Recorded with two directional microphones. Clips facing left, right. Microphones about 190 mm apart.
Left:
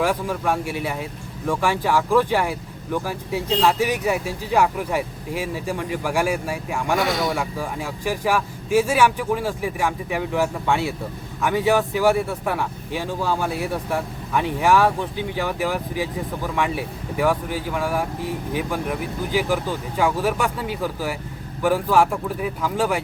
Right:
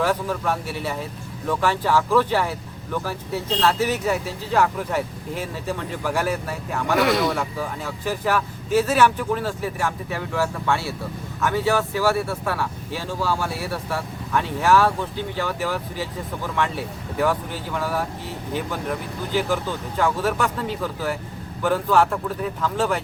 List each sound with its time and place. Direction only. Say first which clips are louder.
0.0 s speech: left 1 dB; 10° left (ahead or behind)